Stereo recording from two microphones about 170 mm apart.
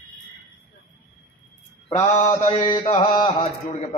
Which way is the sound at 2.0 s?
20° left (ahead or behind).